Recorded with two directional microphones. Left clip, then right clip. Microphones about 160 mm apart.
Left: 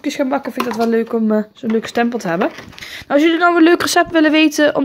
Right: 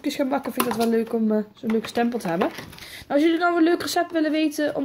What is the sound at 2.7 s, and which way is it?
Speech, 35° left (ahead or behind).